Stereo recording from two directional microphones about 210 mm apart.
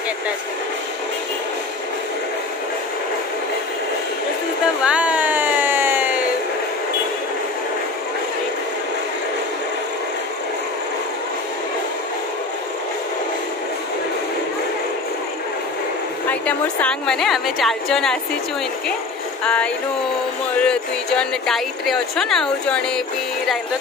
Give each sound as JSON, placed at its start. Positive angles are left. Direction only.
{"t": 4.8, "sound": "a sound", "side_deg": -5}
{"t": 16.3, "sound": "speech", "side_deg": 5}
{"t": 19.4, "sound": "speech", "side_deg": 5}